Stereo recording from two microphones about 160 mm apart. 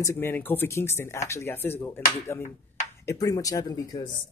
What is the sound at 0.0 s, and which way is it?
Speech, 15° left (ahead or behind).